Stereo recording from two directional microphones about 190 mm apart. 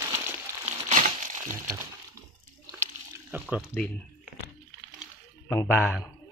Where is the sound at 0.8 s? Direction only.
40° right (ahead or behind).